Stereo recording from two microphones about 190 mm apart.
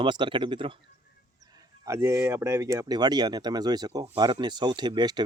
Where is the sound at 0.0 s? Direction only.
25° right (ahead or behind).